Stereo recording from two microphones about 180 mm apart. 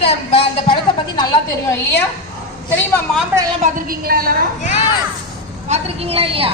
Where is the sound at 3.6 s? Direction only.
50° right (ahead or behind).